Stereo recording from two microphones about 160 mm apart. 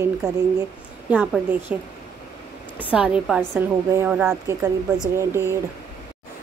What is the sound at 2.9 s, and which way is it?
Speech, 5° right (ahead or behind).